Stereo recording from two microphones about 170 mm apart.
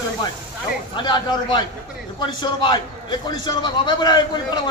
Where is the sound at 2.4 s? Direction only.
25° left (ahead or behind).